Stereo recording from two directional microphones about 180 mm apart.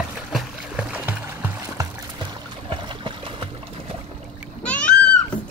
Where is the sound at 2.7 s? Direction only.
30° right (ahead or behind).